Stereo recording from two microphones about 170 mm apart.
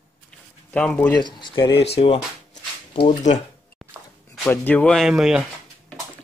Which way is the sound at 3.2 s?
45° left (ahead or behind).